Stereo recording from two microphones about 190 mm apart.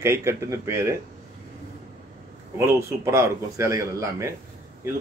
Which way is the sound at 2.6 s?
15° right (ahead or behind).